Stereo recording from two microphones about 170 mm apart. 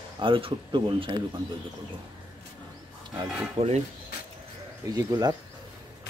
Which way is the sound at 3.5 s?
35° right (ahead or behind).